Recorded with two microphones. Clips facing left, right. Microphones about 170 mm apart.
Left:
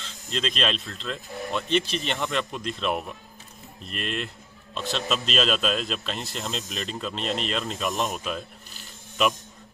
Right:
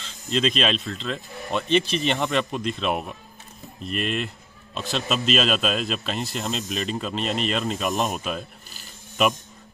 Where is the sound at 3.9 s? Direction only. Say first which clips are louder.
Right 5 dB; 10° right (ahead or behind).